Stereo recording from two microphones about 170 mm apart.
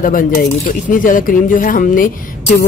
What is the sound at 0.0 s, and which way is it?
Speech, 55° left (ahead or behind).